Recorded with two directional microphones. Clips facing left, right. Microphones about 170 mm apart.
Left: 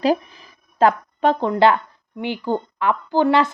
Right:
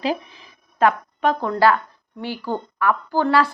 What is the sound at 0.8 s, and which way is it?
A woman's voice, 30° left (ahead or behind).